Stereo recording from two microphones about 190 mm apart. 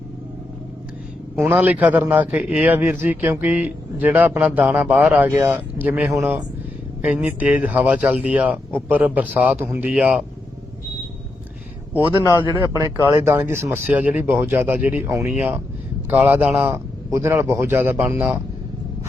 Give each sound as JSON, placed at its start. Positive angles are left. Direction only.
{"t": 1.4, "sound": "a man's voice", "side_deg": -10}
{"t": 12.2, "sound": "speech", "side_deg": 15}
{"t": 13.1, "sound": "a man's voice", "side_deg": -15}